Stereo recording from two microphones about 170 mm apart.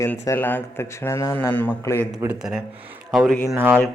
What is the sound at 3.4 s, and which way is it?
Speech, 15° right (ahead or behind).